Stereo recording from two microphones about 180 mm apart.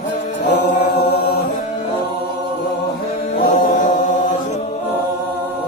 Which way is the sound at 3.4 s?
50° left (ahead or behind).